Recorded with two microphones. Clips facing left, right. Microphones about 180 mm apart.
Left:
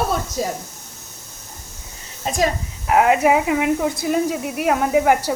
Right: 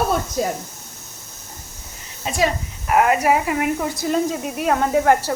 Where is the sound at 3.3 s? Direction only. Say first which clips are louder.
Left 2 dB; 90° left.